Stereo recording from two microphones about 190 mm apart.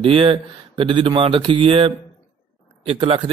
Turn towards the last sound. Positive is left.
turn(degrees=-30)  # may be behind; listen again after turning